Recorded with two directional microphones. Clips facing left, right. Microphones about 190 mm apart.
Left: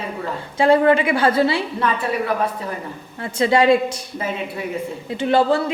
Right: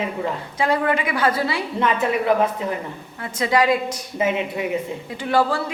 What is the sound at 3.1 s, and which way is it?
Speech, 30° left (ahead or behind).